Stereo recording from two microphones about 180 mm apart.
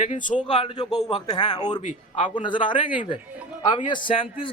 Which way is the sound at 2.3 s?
25° left (ahead or behind).